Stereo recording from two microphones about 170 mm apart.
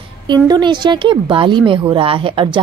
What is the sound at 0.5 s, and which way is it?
Speech, 25° right (ahead or behind).